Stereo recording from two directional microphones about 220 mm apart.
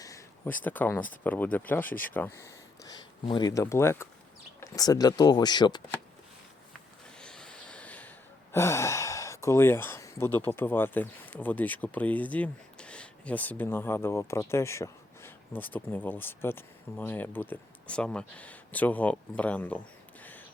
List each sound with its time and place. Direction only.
0.0 s a sound: 10° left (ahead or behind)
1.1 s speech: 10° left (ahead or behind)
7.2 s snort: 5° left (ahead or behind)
8.5 s speech: 15° left (ahead or behind)